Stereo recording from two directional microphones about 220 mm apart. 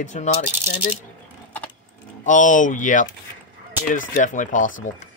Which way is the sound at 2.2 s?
35° left (ahead or behind).